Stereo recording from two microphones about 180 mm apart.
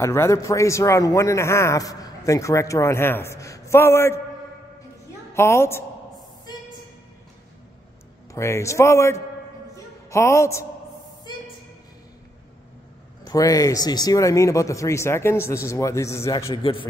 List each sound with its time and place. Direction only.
0.0 s speech: 15° left (ahead or behind)
5.3 s speech: 15° left (ahead or behind)
8.3 s speech: 15° left (ahead or behind)
13.2 s speech: 20° left (ahead or behind)